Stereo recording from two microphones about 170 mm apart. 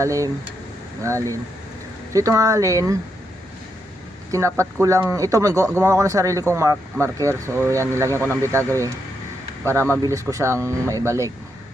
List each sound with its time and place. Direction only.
0.0 s speech: 20° right (ahead or behind)
4.3 s speech: 15° right (ahead or behind)
10.0 s speech: 20° right (ahead or behind)